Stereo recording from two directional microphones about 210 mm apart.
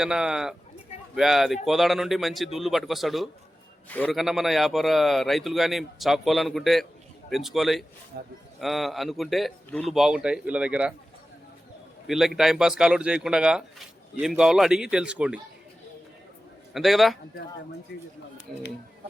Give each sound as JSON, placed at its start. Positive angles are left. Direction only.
{"t": 0.0, "sound": "speech", "side_deg": -5}
{"t": 8.1, "sound": "speech", "side_deg": -50}
{"t": 8.6, "sound": "speech", "side_deg": 0}
{"t": 12.0, "sound": "speech", "side_deg": 0}
{"t": 16.7, "sound": "speech", "side_deg": 0}
{"t": 18.5, "sound": "speech", "side_deg": 0}